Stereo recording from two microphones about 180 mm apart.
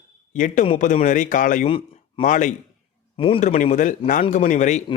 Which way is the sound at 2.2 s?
45° left (ahead or behind).